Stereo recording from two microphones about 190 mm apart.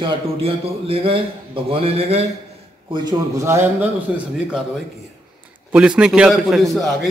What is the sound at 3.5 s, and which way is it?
Speech, 10° right (ahead or behind).